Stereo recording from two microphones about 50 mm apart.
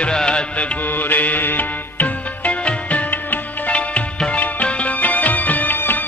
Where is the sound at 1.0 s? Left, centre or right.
Left.